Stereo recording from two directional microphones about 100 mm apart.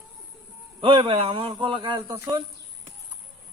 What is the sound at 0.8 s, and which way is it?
A man's voice, 60° right (ahead or behind).